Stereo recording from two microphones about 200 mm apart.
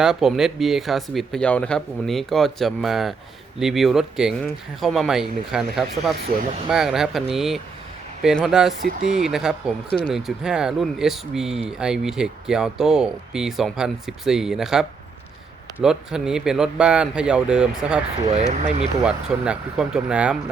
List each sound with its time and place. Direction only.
0.0 s speech: centre (ahead or behind)
18.3 s speech: 30° right (ahead or behind)
19.0 s speech: 5° right (ahead or behind)